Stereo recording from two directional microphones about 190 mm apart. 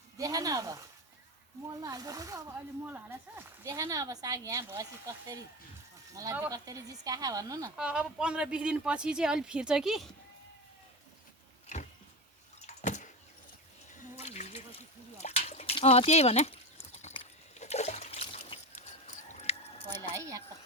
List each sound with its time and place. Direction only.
0.2 s a woman's voice: 20° right (ahead or behind)
1.8 s a woman's voice: 20° right (ahead or behind)
7.8 s speech: 5° right (ahead or behind)
12.6 s drip: 40° left (ahead or behind)
14.0 s a sound: 35° left (ahead or behind)
15.2 s speech: 35° left (ahead or behind)
17.0 s trickle: 35° left (ahead or behind)
20.0 s a sound: 15° right (ahead or behind)